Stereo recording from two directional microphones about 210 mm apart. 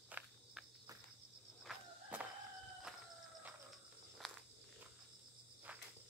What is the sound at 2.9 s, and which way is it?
Chicken, 5° right (ahead or behind).